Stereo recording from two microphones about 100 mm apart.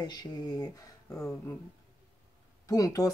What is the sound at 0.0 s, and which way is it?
Speech, 45° left (ahead or behind).